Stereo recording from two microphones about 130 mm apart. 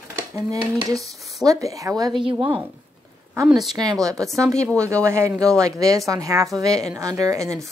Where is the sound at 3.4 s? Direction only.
Centre (ahead or behind).